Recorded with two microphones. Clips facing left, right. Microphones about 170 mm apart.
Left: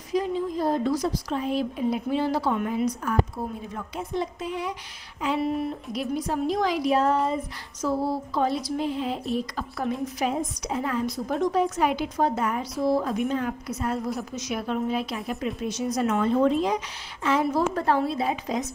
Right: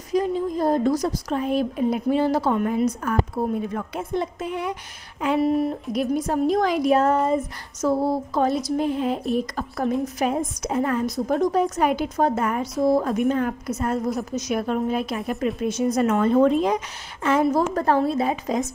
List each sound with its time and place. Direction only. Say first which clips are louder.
0.1 s a woman's voice: right 3 dB; 45° right (ahead or behind)